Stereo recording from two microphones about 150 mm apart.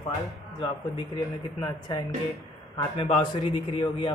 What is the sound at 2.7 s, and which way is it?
Speech, 35° left (ahead or behind).